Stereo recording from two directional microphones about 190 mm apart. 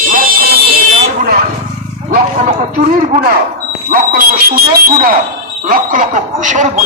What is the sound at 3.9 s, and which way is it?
Speech, 50° right (ahead or behind).